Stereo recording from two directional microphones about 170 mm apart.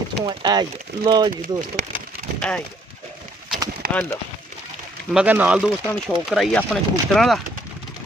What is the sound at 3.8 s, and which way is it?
Clip-clop, 60° right (ahead or behind).